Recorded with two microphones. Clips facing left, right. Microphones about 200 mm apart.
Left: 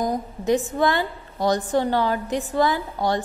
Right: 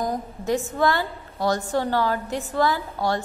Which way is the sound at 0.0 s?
20° left (ahead or behind).